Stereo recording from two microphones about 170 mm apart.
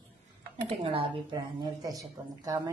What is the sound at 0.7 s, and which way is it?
Speech, 35° right (ahead or behind).